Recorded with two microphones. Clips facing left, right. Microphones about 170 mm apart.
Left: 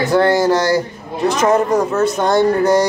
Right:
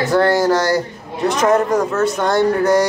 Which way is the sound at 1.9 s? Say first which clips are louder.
Left 2 dB; 20° left (ahead or behind).